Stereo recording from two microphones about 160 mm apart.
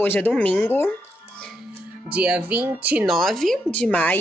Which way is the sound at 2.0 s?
10° right (ahead or behind).